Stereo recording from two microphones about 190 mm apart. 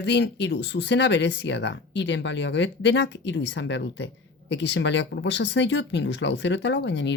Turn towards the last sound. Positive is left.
turn(degrees=70)  # may be behind; listen again after turning